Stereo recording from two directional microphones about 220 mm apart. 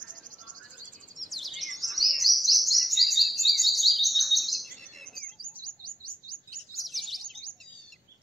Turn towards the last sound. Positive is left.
turn(degrees=0)  # may be behind; listen again after turning